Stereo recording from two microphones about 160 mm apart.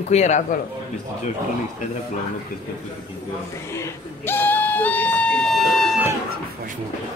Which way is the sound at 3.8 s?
15° left (ahead or behind).